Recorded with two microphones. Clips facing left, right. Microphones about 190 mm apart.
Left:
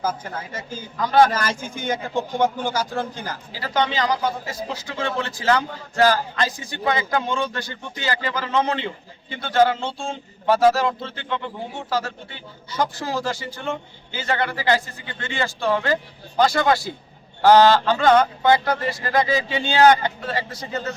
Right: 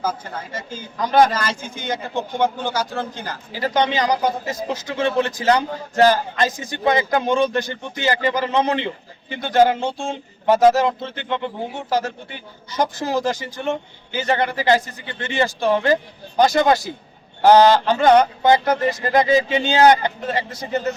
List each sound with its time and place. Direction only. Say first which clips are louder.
0.0 s speech: right 1 dB; 10° left (ahead or behind)
0.9 s speech: right 1 dB; 20° right (ahead or behind)
1.3 s speech: even; 10° left (ahead or behind)
3.6 s speech: right 3 dB; 15° right (ahead or behind)